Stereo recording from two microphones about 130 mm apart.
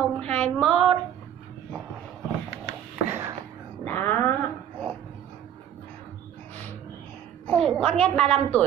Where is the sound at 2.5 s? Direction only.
20° right (ahead or behind).